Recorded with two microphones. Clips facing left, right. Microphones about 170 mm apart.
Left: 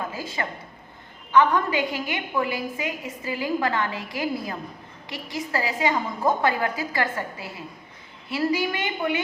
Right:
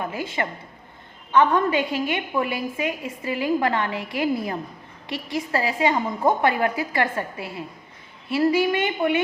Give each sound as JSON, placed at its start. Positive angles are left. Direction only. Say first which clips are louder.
{"t": 0.0, "sound": "a woman's voice", "louder": "right 3 dB", "side_deg": -25}